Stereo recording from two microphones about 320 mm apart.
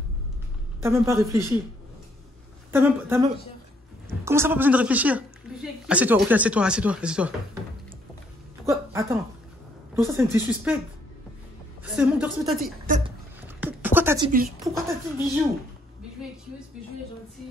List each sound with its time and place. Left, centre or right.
0.8 s a woman's voice: centre
2.7 s a woman's voice: centre
8.6 s a woman's voice: centre
11.8 s a woman's voice: centre
13.6 s a sound: centre
14.7 s a woman's voice: centre